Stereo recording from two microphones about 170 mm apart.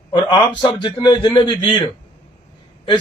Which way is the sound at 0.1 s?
25° left (ahead or behind).